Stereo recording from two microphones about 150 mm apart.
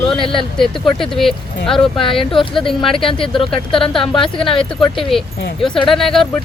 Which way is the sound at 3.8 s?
35° left (ahead or behind).